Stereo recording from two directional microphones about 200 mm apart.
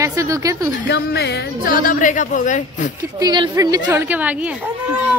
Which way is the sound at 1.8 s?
40° left (ahead or behind).